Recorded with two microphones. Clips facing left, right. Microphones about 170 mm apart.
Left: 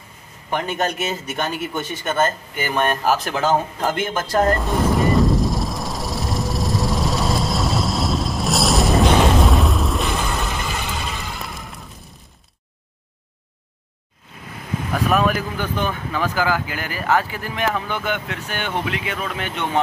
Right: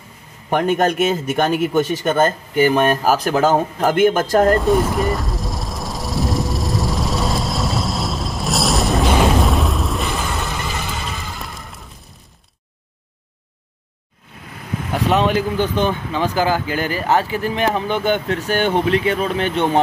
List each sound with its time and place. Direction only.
0.5 s speech: 50° right (ahead or behind)
4.9 s vehicle: centre (ahead or behind)
15.0 s speech: 25° right (ahead or behind)